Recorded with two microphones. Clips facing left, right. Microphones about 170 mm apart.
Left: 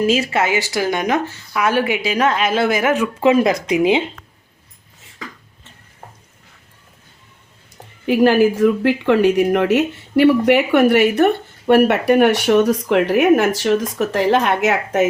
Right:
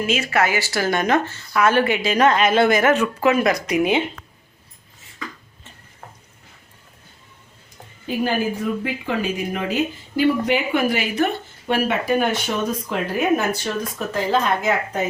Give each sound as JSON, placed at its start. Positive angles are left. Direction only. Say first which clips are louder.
{"t": 0.0, "sound": "speech", "louder": "left 6 dB", "side_deg": 35}
{"t": 0.3, "sound": "a woman's voice", "louder": "left 2 dB", "side_deg": 20}
{"t": 3.2, "sound": "speech", "louder": "left 4 dB", "side_deg": 25}
{"t": 8.0, "sound": "a woman's voice", "louder": "left 9 dB", "side_deg": 80}